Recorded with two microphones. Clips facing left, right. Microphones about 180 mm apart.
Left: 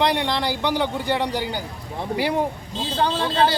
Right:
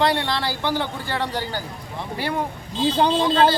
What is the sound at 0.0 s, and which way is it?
A man's voice, 15° left (ahead or behind).